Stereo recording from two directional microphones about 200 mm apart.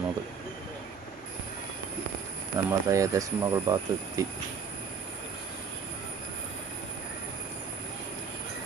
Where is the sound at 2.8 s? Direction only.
15° right (ahead or behind).